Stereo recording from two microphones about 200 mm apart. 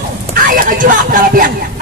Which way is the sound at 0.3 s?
45° right (ahead or behind).